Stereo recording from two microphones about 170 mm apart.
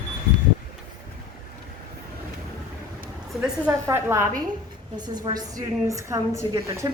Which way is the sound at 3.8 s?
15° right (ahead or behind).